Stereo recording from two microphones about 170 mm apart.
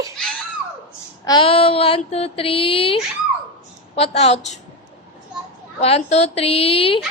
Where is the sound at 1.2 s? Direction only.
25° left (ahead or behind).